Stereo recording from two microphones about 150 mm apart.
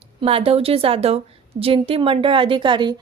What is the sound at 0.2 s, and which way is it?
A woman's voice, 40° right (ahead or behind).